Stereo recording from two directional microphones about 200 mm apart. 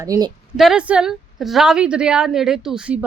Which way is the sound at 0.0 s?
15° right (ahead or behind).